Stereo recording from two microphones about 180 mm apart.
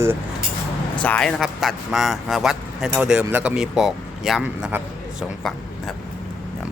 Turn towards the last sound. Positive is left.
turn(degrees=-5)  # may be behind; listen again after turning